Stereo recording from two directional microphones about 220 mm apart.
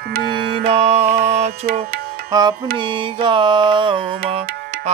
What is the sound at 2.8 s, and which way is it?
Music, 20° right (ahead or behind).